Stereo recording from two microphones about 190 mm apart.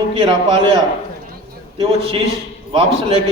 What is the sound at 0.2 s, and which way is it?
Speech, 25° right (ahead or behind).